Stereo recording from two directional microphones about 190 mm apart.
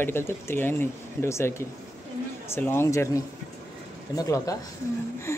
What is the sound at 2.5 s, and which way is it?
Speech, 10° left (ahead or behind).